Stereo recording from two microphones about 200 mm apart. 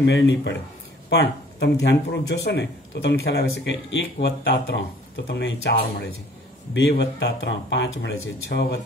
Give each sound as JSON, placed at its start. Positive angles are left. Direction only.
{"t": 0.0, "sound": "speech", "side_deg": 60}